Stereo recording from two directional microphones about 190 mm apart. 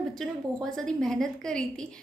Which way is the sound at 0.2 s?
Centre (ahead or behind).